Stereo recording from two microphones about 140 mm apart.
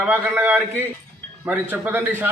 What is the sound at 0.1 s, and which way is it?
A man's voice, 15° right (ahead or behind).